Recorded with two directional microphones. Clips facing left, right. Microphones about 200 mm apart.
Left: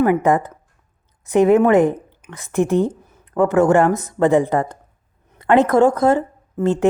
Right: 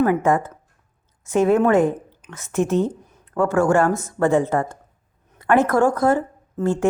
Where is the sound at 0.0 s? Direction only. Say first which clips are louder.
Left 2 dB; 15° left (ahead or behind).